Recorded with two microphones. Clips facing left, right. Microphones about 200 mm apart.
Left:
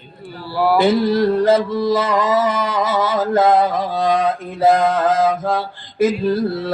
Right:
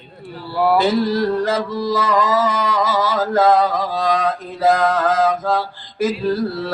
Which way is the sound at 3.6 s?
55° left (ahead or behind).